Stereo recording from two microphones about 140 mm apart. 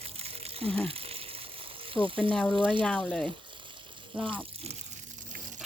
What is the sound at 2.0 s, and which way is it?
Speech, 40° right (ahead or behind).